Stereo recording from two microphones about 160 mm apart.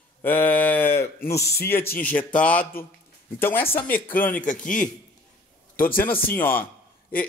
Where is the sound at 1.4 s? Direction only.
90° left.